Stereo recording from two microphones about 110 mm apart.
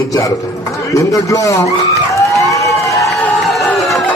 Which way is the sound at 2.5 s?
30° left (ahead or behind).